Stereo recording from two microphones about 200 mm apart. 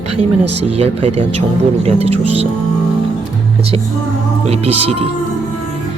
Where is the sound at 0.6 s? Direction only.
30° right (ahead or behind).